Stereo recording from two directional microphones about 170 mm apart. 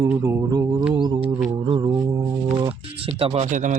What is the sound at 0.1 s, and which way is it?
Mantra, 10° right (ahead or behind).